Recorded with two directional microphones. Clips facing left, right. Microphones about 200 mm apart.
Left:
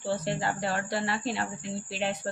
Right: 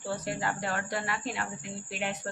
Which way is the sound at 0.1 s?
30° left (ahead or behind).